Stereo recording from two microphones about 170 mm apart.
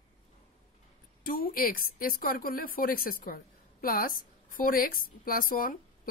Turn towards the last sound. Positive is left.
turn(degrees=55)  # may be behind; listen again after turning